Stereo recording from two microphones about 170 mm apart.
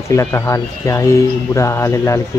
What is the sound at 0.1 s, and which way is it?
Speech, 15° left (ahead or behind).